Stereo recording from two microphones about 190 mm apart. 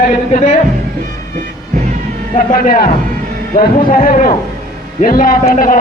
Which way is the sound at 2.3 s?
50° left (ahead or behind).